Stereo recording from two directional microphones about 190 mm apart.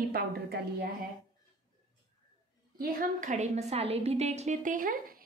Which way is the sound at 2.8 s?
45° right (ahead or behind).